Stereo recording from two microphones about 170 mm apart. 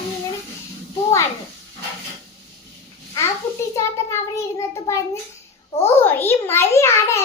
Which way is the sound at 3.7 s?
15° left (ahead or behind).